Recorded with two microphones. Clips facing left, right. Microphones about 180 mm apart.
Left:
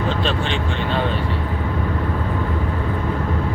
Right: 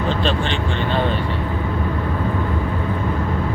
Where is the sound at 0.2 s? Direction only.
Centre (ahead or behind).